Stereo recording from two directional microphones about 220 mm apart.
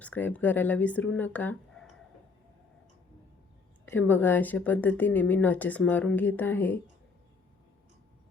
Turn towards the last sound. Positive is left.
turn(degrees=10)  # may be behind; listen again after turning